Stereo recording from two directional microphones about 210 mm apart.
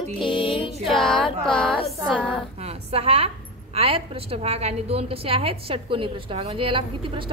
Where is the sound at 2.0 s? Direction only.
5° right (ahead or behind).